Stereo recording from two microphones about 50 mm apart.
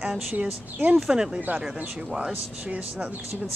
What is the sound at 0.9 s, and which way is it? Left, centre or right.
Speech, centre.